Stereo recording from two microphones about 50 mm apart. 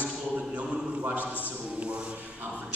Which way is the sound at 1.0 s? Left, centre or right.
Right.